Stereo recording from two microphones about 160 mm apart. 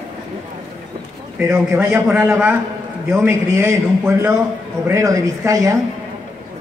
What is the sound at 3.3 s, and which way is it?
A man's voice, 15° right (ahead or behind).